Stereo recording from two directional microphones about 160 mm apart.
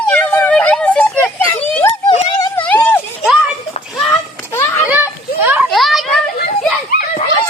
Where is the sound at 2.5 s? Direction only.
10° left (ahead or behind).